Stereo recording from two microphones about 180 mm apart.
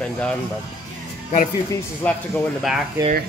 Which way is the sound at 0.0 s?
5° left (ahead or behind).